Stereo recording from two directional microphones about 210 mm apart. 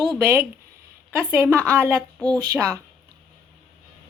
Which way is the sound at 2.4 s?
15° right (ahead or behind).